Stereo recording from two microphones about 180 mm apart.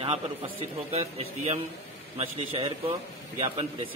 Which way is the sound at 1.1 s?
35° right (ahead or behind).